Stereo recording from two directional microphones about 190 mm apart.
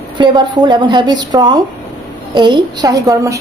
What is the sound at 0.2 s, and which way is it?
A man's voice, 25° right (ahead or behind).